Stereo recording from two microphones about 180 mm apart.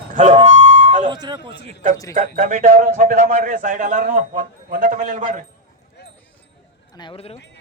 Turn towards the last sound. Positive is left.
turn(degrees=30)  # may be behind; listen again after turning